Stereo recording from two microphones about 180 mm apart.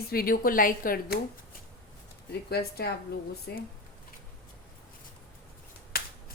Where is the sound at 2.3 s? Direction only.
60° left (ahead or behind).